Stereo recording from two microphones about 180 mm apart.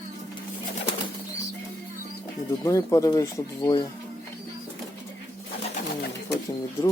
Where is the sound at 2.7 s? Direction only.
20° left (ahead or behind).